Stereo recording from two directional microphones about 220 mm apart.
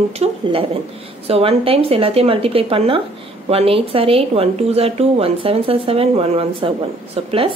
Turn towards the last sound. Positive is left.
turn(degrees=-25)  # may be behind; listen again after turning